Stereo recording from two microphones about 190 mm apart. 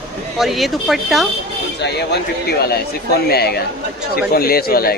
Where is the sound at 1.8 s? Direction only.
60° left (ahead or behind).